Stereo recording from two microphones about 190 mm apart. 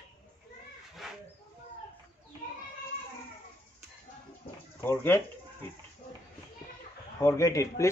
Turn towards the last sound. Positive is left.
turn(degrees=15)  # may be behind; listen again after turning